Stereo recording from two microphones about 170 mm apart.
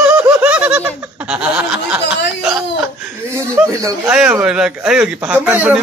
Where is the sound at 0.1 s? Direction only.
10° right (ahead or behind).